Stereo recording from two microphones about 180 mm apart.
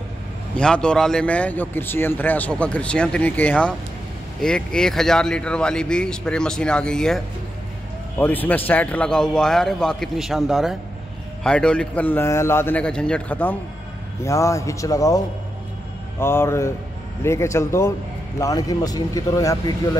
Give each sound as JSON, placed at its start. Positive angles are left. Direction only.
{"t": 0.6, "sound": "a man's voice", "side_deg": 5}
{"t": 8.2, "sound": "a man's voice", "side_deg": 10}